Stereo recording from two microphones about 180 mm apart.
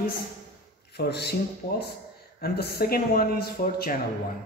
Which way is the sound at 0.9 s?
65° left (ahead or behind).